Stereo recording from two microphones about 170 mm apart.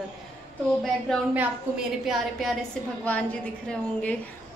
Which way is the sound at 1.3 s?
5° right (ahead or behind).